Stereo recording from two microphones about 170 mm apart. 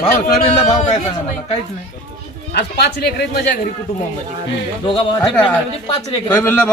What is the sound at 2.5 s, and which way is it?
Speech, 75° left (ahead or behind).